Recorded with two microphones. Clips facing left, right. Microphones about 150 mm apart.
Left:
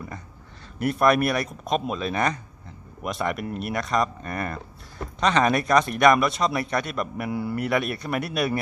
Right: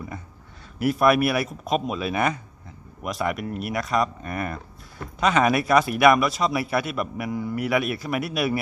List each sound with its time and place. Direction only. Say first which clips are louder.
0.8 s a man's voice: right 1 dB; 5° right (ahead or behind)
7.3 s a man's voice: even; 5° left (ahead or behind)